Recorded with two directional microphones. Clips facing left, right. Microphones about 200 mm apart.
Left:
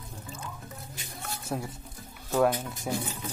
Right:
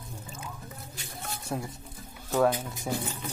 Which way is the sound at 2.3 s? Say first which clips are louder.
Even; centre (ahead or behind).